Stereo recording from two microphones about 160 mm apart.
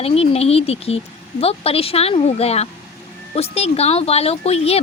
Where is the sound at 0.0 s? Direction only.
40° left (ahead or behind).